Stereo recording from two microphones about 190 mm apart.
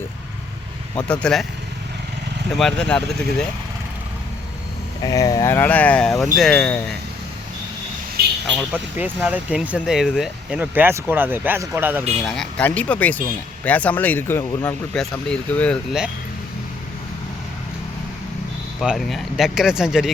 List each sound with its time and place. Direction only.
0.9 s speech: 5° left (ahead or behind)
2.6 s speech: 5° left (ahead or behind)
5.0 s speech: 20° left (ahead or behind)
8.2 s vehicle: 55° right (ahead or behind)
8.5 s speech: 5° right (ahead or behind)
12.2 s speech: 5° left (ahead or behind)
18.8 s speech: centre (ahead or behind)